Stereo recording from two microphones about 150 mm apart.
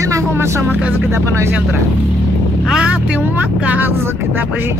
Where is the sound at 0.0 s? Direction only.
20° right (ahead or behind).